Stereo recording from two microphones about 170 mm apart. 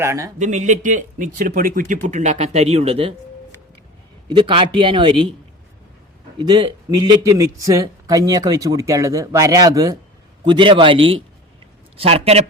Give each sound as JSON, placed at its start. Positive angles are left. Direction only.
{"t": 0.0, "sound": "speech", "side_deg": -20}
{"t": 0.3, "sound": "speech", "side_deg": -45}
{"t": 4.3, "sound": "a man's voice", "side_deg": -30}
{"t": 6.4, "sound": "a man's voice", "side_deg": -25}